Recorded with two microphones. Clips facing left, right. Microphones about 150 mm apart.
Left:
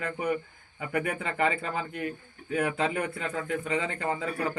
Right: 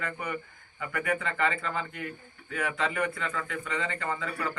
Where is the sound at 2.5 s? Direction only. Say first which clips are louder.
Left 4 dB; 45° left (ahead or behind).